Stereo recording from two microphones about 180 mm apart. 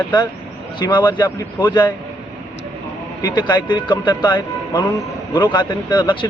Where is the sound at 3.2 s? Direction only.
25° left (ahead or behind).